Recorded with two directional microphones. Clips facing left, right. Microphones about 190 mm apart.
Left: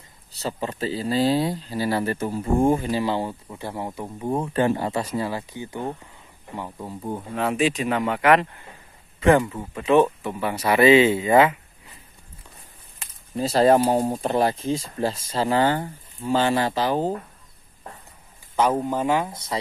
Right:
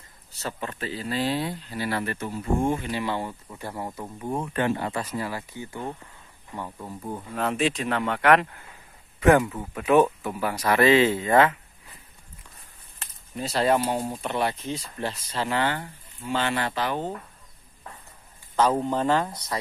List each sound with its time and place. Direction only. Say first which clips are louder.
0.4 s speech: left 5 dB; 30° left (ahead or behind)
3.4 s speech: left 3 dB; 20° left (ahead or behind)
4.3 s speech: left 4 dB; 25° left (ahead or behind); by 10.5 s 5° right (ahead or behind)
10.5 s speech: left 4 dB; 10° left (ahead or behind)
13.4 s speech: left 6 dB; 35° left (ahead or behind)
18.6 s speech: left 1 dB; 10° left (ahead or behind)